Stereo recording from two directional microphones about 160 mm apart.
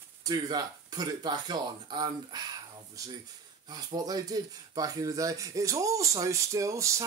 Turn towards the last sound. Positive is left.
turn(degrees=-20)  # may be behind; listen again after turning